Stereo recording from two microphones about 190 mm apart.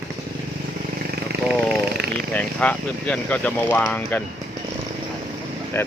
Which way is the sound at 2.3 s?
5° left (ahead or behind).